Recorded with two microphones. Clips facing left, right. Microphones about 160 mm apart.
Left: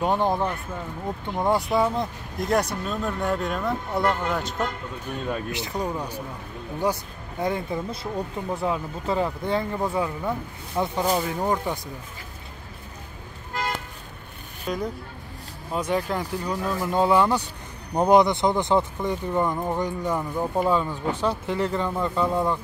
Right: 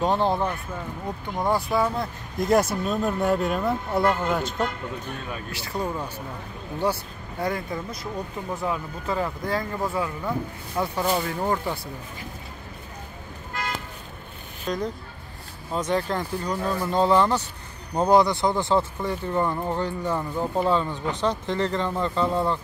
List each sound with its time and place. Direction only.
0.0 s speech: 10° left (ahead or behind)
1.5 s speech: 20° left (ahead or behind)
2.4 s speech: 5° right (ahead or behind)
5.5 s speech: 20° left (ahead or behind)
14.7 s speech: 5° left (ahead or behind)